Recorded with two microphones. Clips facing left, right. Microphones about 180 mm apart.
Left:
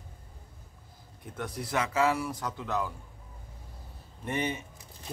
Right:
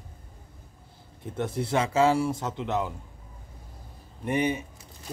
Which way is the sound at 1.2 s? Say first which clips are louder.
Right 7 dB; 25° right (ahead or behind).